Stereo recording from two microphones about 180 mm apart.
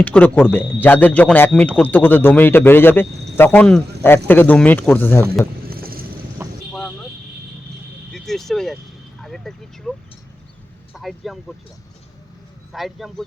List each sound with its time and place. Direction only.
0.0 s speech: 10° left (ahead or behind)
5.6 s vehicle: 55° right (ahead or behind)
6.4 s vehicle: 15° right (ahead or behind)
6.7 s vehicle: centre (ahead or behind)
8.1 s speech: centre (ahead or behind)
10.9 s speech: centre (ahead or behind)
12.7 s speech: centre (ahead or behind)